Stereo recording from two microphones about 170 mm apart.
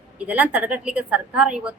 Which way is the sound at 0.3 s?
10° right (ahead or behind).